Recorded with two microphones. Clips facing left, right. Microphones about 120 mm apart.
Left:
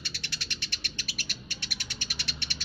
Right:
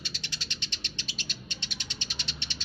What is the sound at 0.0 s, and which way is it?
Cat, 15° right (ahead or behind).